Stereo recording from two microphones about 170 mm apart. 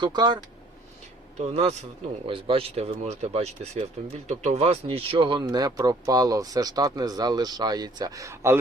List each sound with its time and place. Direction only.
0.0 s speech: 25° right (ahead or behind)
1.4 s speech: 40° right (ahead or behind); by 8.5 s 15° right (ahead or behind)